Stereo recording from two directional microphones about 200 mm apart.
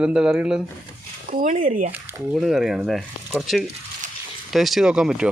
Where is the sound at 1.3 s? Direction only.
40° right (ahead or behind).